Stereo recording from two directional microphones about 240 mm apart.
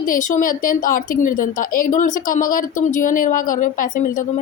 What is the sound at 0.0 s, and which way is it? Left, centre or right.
A woman's voice, left.